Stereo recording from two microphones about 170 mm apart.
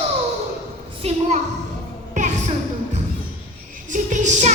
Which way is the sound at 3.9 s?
45° right (ahead or behind).